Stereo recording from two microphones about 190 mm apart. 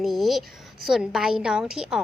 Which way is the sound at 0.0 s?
Centre (ahead or behind).